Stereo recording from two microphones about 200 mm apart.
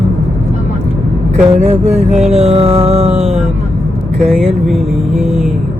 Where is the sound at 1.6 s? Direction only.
35° right (ahead or behind).